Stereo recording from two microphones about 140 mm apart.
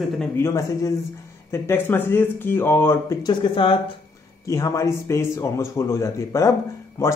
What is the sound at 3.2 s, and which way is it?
Speech, 35° left (ahead or behind).